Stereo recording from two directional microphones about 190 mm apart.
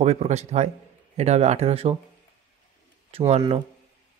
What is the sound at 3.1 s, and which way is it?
Speech, 30° right (ahead or behind).